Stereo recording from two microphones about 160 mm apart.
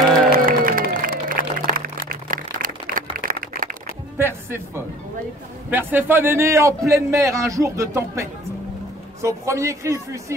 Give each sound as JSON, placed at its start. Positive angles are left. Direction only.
{"t": 0.3, "sound": "a sound", "side_deg": -60}
{"t": 4.2, "sound": "music", "side_deg": -15}
{"t": 5.7, "sound": "a man's voice", "side_deg": -10}